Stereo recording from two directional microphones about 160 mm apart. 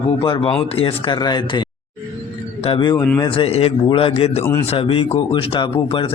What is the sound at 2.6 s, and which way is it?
A man's voice, 30° left (ahead or behind).